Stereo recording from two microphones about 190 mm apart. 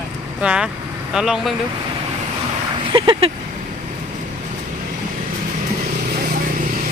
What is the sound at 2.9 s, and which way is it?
Speech, 25° right (ahead or behind).